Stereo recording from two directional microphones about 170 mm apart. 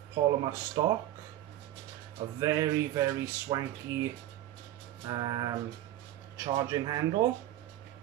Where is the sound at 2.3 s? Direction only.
20° right (ahead or behind).